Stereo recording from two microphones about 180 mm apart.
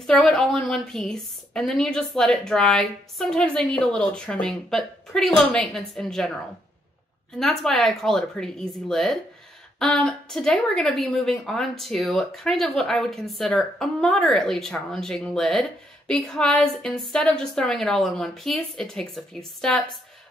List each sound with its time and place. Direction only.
0.0 s a woman's voice: centre (ahead or behind)
7.3 s a woman's voice: centre (ahead or behind)